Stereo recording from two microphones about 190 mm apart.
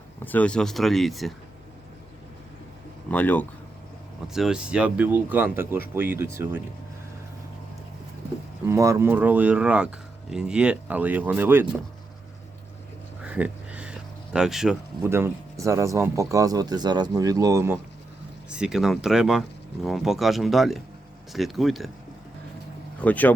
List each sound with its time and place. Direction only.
0.2 s speech: 10° left (ahead or behind)
3.1 s speech: 10° left (ahead or behind)
4.3 s speech: 5° right (ahead or behind)
8.6 s speech: 15° right (ahead or behind)
13.2 s a sound: 5° right (ahead or behind)
14.3 s speech: 5° right (ahead or behind)
15.0 s speech: 15° right (ahead or behind)
18.4 s speech: 5° right (ahead or behind)
23.0 s speech: 10° left (ahead or behind)